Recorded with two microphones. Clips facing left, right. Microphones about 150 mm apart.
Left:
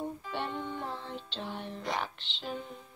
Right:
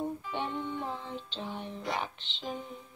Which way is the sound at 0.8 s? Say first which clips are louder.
Right 1 dB; 5° right (ahead or behind).